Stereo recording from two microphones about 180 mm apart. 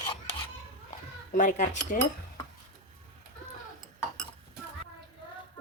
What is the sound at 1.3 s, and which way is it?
Speech, 45° left (ahead or behind).